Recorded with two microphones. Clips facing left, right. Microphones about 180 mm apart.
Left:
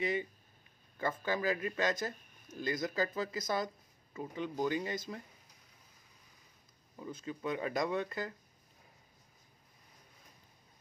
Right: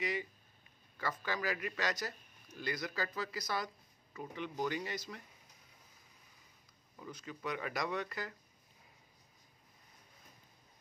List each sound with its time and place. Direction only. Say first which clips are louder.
0.0 s speech: left 4 dB; 25° left (ahead or behind)
7.2 s speech: left 4 dB; 30° left (ahead or behind)